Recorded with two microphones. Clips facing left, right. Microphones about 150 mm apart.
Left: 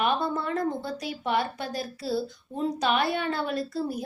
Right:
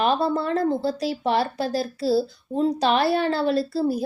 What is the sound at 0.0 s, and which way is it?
Speech, 35° right (ahead or behind).